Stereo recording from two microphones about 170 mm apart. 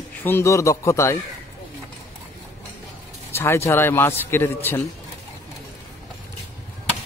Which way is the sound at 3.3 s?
15° left (ahead or behind).